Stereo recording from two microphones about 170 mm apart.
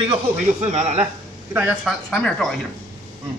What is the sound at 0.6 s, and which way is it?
Speech, 45° right (ahead or behind).